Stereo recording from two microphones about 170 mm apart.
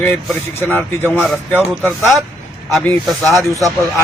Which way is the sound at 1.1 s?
Centre (ahead or behind).